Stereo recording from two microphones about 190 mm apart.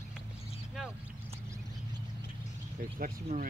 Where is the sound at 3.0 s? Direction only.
45° right (ahead or behind).